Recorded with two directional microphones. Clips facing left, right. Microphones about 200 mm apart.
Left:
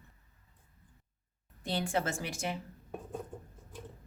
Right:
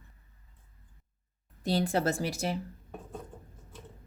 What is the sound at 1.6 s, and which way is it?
Speech, 40° right (ahead or behind).